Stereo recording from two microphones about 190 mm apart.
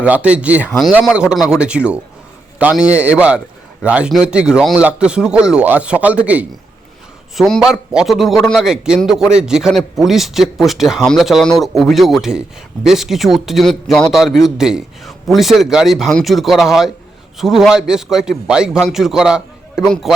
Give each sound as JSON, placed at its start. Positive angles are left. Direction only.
{"t": 0.0, "sound": "a man's voice", "side_deg": -5}